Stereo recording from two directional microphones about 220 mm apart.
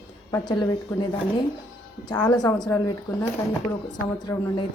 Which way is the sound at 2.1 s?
20° left (ahead or behind).